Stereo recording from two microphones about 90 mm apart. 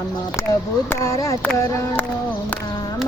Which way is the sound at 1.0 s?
35° left (ahead or behind).